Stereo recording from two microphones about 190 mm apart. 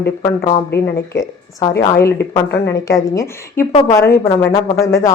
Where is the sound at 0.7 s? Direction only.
60° left (ahead or behind).